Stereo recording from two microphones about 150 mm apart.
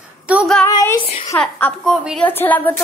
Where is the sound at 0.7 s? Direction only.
25° left (ahead or behind).